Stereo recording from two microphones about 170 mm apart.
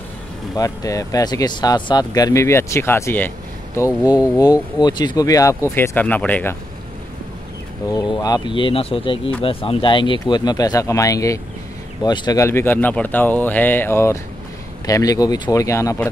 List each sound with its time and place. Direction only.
0.6 s speech: 20° left (ahead or behind)
4.0 s speech: 10° right (ahead or behind)
4.4 s speech: 25° left (ahead or behind)
7.9 s speech: 25° left (ahead or behind)